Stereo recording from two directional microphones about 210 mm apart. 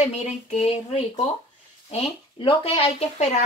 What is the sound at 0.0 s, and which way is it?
A woman's voice, 30° left (ahead or behind).